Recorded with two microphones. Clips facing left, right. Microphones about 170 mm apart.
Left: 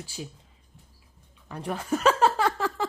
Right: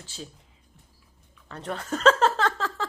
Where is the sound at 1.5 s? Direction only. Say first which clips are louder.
Left 3 dB; 10° left (ahead or behind).